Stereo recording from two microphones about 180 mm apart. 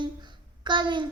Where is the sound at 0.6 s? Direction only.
25° right (ahead or behind).